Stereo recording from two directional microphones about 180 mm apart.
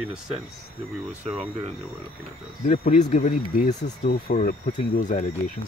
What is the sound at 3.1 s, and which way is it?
Speech, 45° left (ahead or behind).